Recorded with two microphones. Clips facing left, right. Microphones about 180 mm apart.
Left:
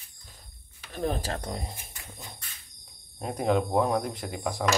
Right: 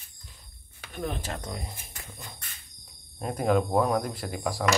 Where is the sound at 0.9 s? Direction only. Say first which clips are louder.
Left 3 dB; 35° left (ahead or behind).